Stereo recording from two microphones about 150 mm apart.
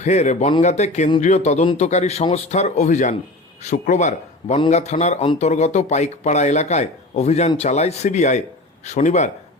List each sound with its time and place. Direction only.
0.0 s speech: 50° left (ahead or behind)